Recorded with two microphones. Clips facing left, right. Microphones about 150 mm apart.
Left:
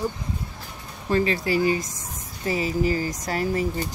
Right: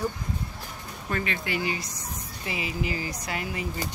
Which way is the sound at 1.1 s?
35° left (ahead or behind).